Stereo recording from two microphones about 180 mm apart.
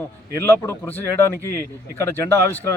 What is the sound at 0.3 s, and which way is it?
Speech, 15° left (ahead or behind).